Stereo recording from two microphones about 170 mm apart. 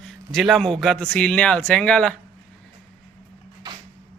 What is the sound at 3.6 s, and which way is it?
Vehicle, 25° right (ahead or behind).